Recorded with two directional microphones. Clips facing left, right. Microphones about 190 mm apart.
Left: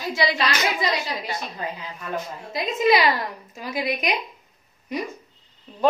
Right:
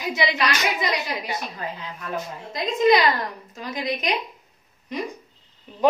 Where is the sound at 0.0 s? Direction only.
20° right (ahead or behind).